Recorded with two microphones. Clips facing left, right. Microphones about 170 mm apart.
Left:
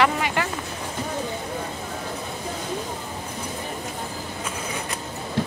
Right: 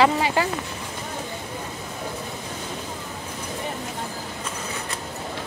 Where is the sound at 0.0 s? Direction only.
25° right (ahead or behind).